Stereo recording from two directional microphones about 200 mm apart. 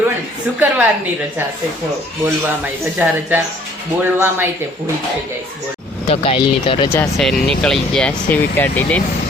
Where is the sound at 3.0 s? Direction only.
10° right (ahead or behind).